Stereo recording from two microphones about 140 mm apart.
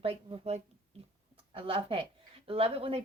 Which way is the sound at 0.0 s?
45° right (ahead or behind).